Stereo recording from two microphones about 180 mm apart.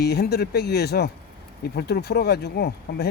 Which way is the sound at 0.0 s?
60° left (ahead or behind).